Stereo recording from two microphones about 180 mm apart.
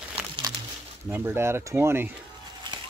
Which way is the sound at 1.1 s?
15° right (ahead or behind).